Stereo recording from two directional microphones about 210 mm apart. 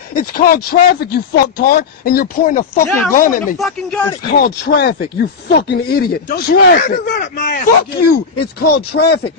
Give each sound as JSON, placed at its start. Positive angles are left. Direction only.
{"t": 0.1, "sound": "speech", "side_deg": 45}
{"t": 3.5, "sound": "speech", "side_deg": 0}
{"t": 4.3, "sound": "speech", "side_deg": 45}